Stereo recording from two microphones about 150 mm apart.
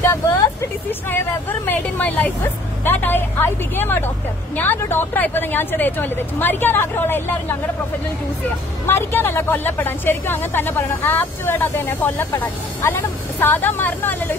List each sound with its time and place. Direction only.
0.0 s vehicle: 20° left (ahead or behind)
1.1 s speech: 10° left (ahead or behind)
8.8 s speech: 15° left (ahead or behind)